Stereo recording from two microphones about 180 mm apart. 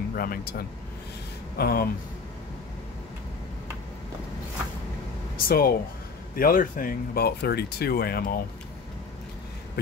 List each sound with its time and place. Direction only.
0.1 s speech: 55° left (ahead or behind)
5.5 s speech: 60° left (ahead or behind)